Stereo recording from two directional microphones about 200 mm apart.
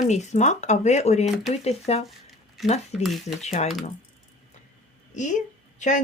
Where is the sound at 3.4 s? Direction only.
35° left (ahead or behind).